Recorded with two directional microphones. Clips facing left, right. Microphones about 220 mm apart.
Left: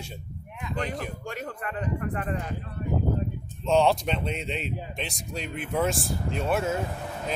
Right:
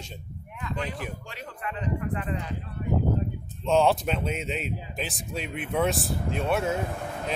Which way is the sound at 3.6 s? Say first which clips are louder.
Even; centre (ahead or behind).